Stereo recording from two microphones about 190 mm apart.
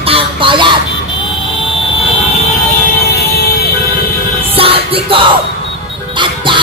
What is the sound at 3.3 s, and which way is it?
Vehicle, 55° left (ahead or behind).